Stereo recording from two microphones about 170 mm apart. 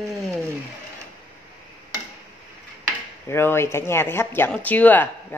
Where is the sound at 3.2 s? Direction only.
15° left (ahead or behind).